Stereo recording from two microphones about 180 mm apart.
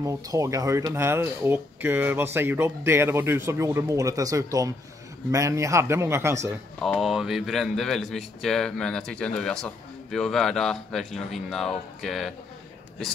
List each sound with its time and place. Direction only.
0.0 s speech: 20° right (ahead or behind)
6.8 s speech: centre (ahead or behind)